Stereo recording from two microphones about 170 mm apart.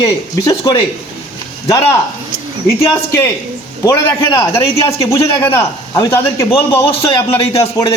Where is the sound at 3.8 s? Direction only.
15° left (ahead or behind).